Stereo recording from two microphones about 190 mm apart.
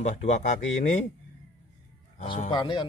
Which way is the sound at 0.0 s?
35° left (ahead or behind).